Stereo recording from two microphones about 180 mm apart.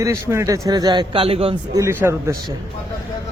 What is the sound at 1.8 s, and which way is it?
Speech, 15° right (ahead or behind).